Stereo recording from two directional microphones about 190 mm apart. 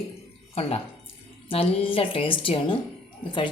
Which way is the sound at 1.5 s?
30° left (ahead or behind).